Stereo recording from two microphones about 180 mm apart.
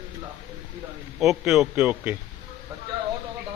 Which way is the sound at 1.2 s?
5° right (ahead or behind).